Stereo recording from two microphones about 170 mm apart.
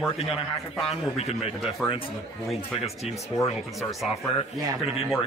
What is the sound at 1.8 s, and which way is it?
Speech, centre (ahead or behind).